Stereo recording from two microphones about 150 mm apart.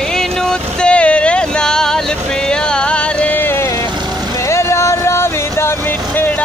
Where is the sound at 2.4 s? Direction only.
5° left (ahead or behind).